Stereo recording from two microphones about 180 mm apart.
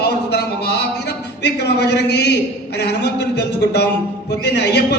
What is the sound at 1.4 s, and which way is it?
Speech, 65° left (ahead or behind).